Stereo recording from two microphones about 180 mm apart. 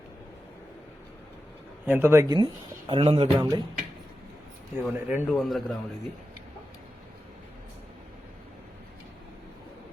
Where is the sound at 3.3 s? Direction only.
20° right (ahead or behind).